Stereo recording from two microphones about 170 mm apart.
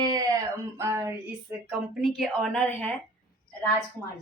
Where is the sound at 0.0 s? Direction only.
25° right (ahead or behind).